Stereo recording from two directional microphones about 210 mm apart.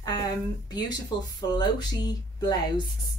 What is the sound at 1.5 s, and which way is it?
A woman's voice, 20° left (ahead or behind).